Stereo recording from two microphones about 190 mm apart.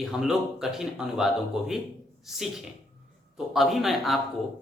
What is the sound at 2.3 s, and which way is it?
Speech, centre (ahead or behind).